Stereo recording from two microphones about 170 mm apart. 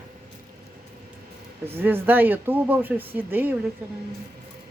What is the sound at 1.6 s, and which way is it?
Speech, 10° right (ahead or behind).